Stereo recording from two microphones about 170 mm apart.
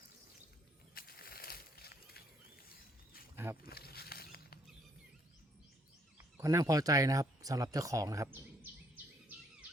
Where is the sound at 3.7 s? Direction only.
65° left (ahead or behind).